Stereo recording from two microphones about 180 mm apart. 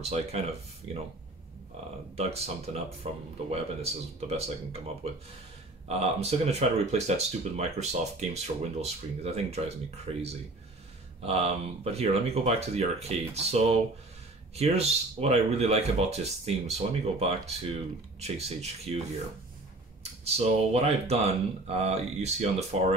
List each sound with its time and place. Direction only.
0.0 s speech: 35° right (ahead or behind)
2.1 s speech: 35° right (ahead or behind)
20.0 s speech: 35° right (ahead or behind)